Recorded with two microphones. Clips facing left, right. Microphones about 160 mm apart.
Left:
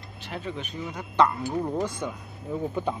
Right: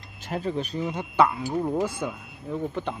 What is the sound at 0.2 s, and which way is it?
Speech, 40° right (ahead or behind).